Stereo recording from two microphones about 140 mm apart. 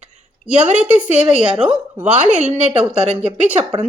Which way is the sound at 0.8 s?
10° right (ahead or behind).